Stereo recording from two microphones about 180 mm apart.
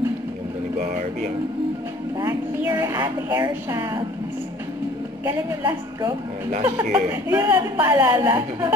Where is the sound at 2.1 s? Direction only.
20° right (ahead or behind).